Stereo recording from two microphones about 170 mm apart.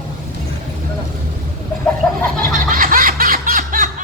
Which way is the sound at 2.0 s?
5° left (ahead or behind).